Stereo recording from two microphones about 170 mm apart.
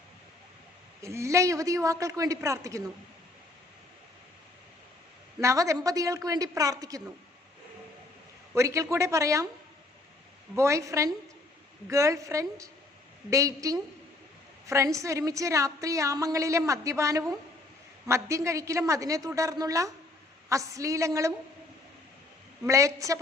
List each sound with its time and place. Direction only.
1.0 s a woman's voice: 15° right (ahead or behind)
5.4 s a woman's voice: 20° right (ahead or behind)
8.5 s speech: 15° right (ahead or behind)
10.5 s a woman's voice: 15° right (ahead or behind)
22.6 s speech: 20° right (ahead or behind)